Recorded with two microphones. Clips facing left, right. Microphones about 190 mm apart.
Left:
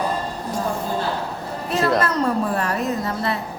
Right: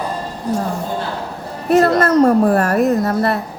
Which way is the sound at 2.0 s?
45° right (ahead or behind).